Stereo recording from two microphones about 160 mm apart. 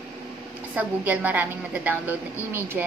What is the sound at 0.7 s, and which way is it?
A woman's voice, 10° right (ahead or behind).